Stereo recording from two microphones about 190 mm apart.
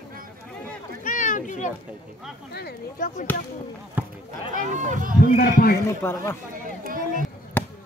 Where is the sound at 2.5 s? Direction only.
55° left (ahead or behind).